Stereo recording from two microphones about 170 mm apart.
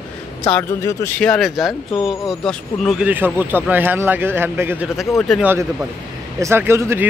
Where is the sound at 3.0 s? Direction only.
10° right (ahead or behind).